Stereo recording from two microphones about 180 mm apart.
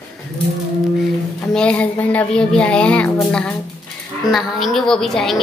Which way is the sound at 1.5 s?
5° left (ahead or behind).